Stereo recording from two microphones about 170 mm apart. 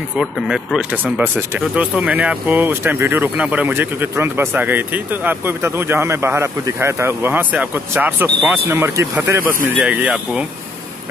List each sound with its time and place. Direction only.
0.2 s speech: 5° right (ahead or behind)
9.8 s speech: 5° right (ahead or behind)